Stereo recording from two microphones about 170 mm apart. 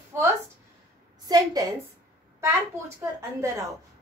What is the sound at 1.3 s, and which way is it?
Speech, 25° right (ahead or behind).